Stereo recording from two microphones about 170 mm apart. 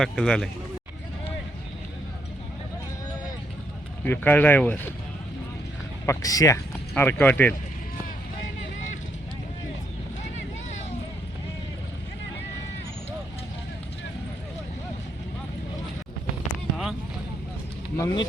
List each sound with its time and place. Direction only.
0.0 s a man's voice: 5° left (ahead or behind)
4.0 s speech: 10° left (ahead or behind)
6.1 s speech: 20° left (ahead or behind)
6.9 s speech: 10° left (ahead or behind)
17.9 s speech: 20° left (ahead or behind)